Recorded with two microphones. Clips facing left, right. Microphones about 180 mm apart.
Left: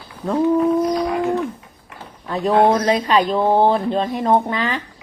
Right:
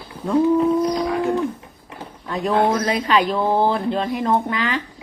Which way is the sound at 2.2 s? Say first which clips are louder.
Left 4 dB; 25° left (ahead or behind).